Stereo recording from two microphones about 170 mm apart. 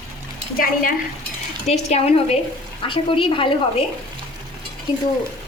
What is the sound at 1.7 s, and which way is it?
A woman's voice, 40° left (ahead or behind).